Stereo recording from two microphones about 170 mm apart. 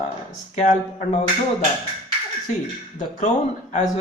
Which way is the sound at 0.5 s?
45° left (ahead or behind).